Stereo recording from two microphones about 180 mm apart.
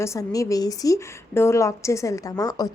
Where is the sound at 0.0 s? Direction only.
20° left (ahead or behind).